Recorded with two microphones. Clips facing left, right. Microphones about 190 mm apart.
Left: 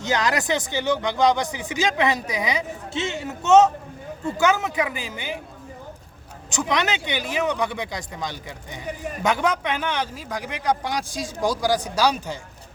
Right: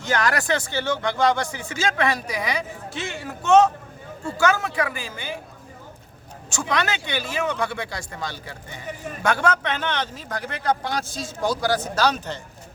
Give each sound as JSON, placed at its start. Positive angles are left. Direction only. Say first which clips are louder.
{"t": 0.0, "sound": "speech", "louder": "even", "side_deg": 20}
{"t": 6.5, "sound": "speech", "louder": "left 1 dB", "side_deg": 20}